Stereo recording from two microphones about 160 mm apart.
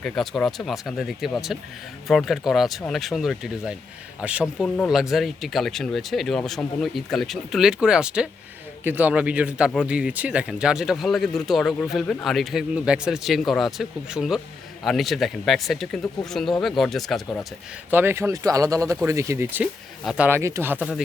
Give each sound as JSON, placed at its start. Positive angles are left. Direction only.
{"t": 0.0, "sound": "speech", "side_deg": 5}
{"t": 17.9, "sound": "speech", "side_deg": -15}